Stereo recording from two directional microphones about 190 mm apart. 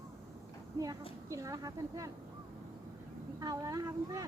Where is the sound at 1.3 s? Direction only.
15° right (ahead or behind).